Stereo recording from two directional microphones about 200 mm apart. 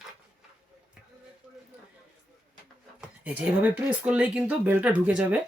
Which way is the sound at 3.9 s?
5° right (ahead or behind).